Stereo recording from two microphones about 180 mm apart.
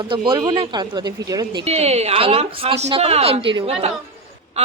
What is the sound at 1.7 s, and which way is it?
A woman's voice, 35° right (ahead or behind).